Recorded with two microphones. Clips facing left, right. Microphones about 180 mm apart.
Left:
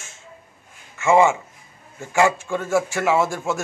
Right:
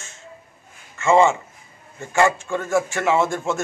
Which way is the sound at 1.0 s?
10° left (ahead or behind).